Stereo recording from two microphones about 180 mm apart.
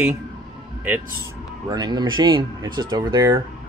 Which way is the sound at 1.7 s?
20° right (ahead or behind).